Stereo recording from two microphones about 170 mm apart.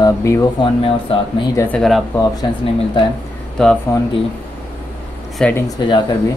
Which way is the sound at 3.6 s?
5° left (ahead or behind).